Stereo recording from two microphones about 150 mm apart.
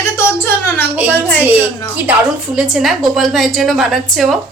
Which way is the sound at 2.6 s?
Centre (ahead or behind).